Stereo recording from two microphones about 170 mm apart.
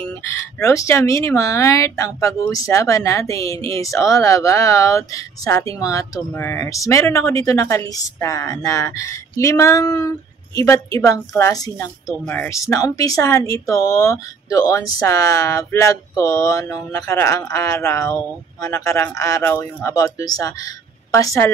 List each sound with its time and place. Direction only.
0.1 s a woman's voice: 15° left (ahead or behind)